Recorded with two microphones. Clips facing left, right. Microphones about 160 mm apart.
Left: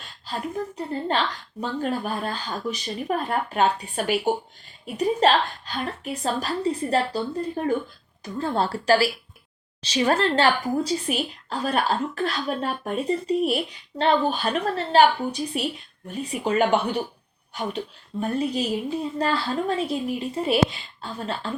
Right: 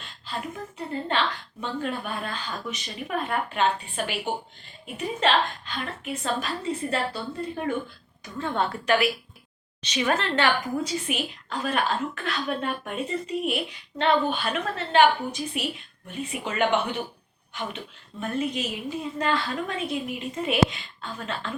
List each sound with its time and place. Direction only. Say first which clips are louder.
1.6 s a woman's voice: left 4 dB; 40° left (ahead or behind)